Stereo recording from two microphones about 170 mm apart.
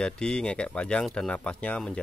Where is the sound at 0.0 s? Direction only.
5° left (ahead or behind).